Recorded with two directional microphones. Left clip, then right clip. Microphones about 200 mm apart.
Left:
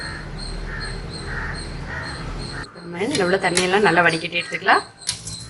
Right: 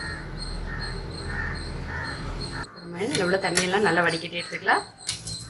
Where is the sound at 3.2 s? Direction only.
25° left (ahead or behind).